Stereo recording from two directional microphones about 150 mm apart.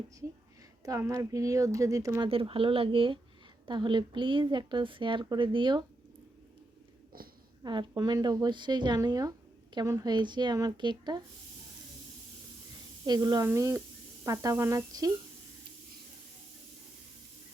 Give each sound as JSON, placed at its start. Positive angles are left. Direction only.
{"t": 0.9, "sound": "speech", "side_deg": -20}
{"t": 2.3, "sound": "a woman's voice", "side_deg": -40}
{"t": 7.6, "sound": "speech", "side_deg": -30}
{"t": 13.1, "sound": "speech", "side_deg": -30}